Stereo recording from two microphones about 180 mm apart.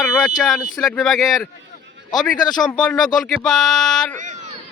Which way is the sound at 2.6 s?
5° left (ahead or behind).